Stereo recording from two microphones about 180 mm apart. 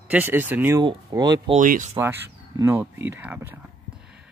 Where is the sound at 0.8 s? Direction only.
25° right (ahead or behind).